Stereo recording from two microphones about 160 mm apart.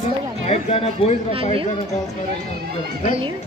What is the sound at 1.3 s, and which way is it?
Speech, 35° right (ahead or behind).